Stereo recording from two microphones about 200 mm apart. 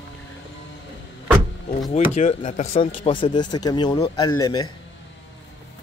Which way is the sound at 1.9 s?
35° left (ahead or behind).